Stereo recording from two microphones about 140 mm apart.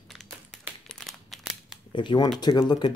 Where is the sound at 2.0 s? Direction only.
35° left (ahead or behind).